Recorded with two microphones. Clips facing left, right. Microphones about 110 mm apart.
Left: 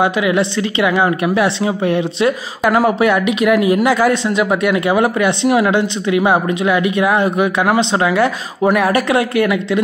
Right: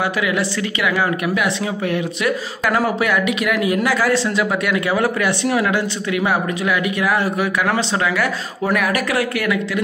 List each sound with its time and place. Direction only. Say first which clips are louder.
0.0 s speech: left 5 dB; 25° left (ahead or behind)